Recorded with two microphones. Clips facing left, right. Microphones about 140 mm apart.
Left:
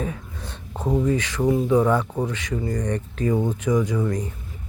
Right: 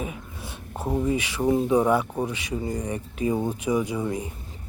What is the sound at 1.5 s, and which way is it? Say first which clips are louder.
Speech: left 1 dB; 25° right (ahead or behind).